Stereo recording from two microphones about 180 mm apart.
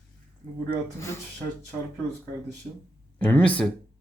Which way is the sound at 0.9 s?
15° left (ahead or behind).